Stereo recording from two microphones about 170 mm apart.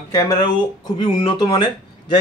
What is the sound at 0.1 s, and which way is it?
Speech, 20° left (ahead or behind).